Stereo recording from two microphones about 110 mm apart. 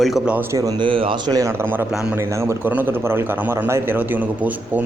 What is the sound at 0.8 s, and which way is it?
Speech, 50° right (ahead or behind).